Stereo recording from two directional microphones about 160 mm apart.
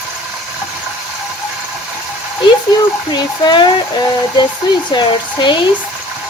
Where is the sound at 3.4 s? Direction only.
30° left (ahead or behind).